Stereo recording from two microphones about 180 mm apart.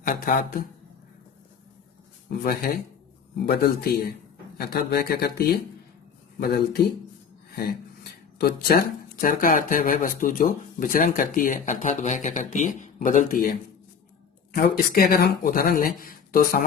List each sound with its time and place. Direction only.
0.0 s speech: 50° left (ahead or behind)
2.3 s speech: 55° left (ahead or behind)
8.4 s speech: 55° left (ahead or behind)